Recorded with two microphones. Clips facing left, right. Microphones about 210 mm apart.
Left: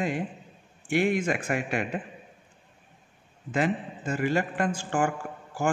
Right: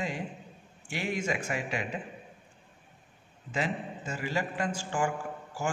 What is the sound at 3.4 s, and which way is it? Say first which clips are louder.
A man's voice: left 6 dB; 55° left (ahead or behind).